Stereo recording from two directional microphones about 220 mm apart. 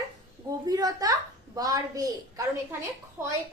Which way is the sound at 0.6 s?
15° right (ahead or behind).